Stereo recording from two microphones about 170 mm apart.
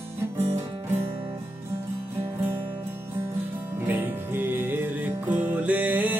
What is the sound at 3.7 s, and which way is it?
Music, 10° right (ahead or behind).